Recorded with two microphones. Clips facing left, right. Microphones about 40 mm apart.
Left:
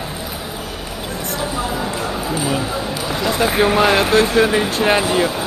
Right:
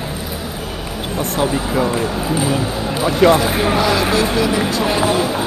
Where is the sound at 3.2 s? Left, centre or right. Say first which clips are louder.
Right 11 dB; right.